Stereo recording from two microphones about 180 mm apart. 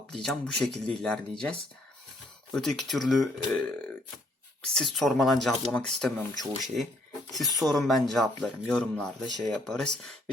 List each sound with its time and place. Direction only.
0.1 s speech: 5° left (ahead or behind)
7.6 s speech: centre (ahead or behind)